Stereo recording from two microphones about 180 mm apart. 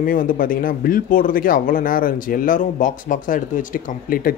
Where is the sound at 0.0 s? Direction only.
50° left (ahead or behind).